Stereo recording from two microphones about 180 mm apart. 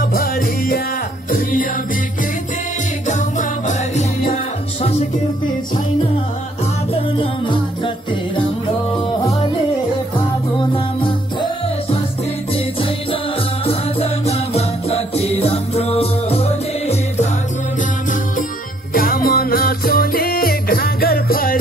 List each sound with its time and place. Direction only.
0.0 s music: 55° left (ahead or behind)
3.1 s music: 45° left (ahead or behind)
6.9 s music: 30° left (ahead or behind)
10.6 s music: 30° left (ahead or behind)
12.5 s music: 30° left (ahead or behind)
18.9 s music: 55° left (ahead or behind)